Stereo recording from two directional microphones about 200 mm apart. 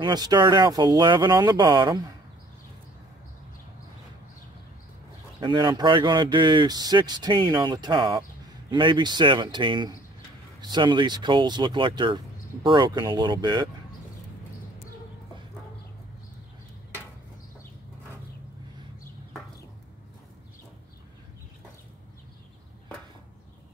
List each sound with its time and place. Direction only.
0.0 s speech: 20° right (ahead or behind)
5.4 s speech: 25° right (ahead or behind)